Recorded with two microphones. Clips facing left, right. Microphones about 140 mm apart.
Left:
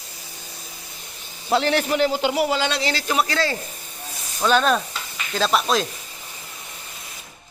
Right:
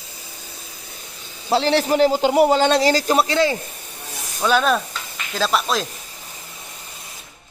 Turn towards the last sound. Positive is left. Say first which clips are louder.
# left 1 dB
turn(degrees=0)  # may be behind; listen again after turning